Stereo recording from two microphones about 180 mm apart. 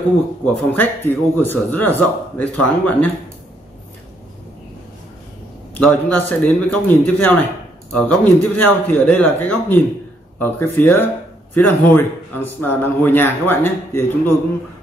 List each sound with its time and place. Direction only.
0.7 s speech: 10° left (ahead or behind)
5.8 s speech: 10° left (ahead or behind)